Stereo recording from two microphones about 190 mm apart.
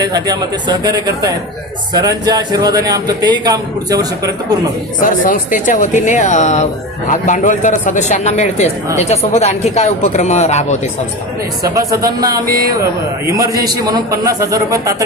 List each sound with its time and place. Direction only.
0.0 s a man's voice: 20° right (ahead or behind)
4.9 s speech: 45° left (ahead or behind)
11.9 s a man's voice: 20° right (ahead or behind)